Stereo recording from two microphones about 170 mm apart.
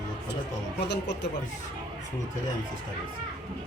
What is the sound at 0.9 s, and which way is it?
Speech, 90° left.